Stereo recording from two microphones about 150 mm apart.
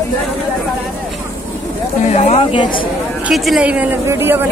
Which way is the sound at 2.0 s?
45° left (ahead or behind).